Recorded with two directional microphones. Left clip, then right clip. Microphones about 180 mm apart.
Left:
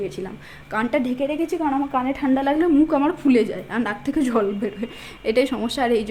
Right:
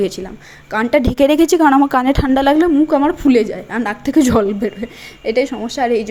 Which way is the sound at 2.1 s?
25° right (ahead or behind).